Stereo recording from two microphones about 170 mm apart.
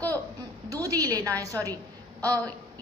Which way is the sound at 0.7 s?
20° right (ahead or behind).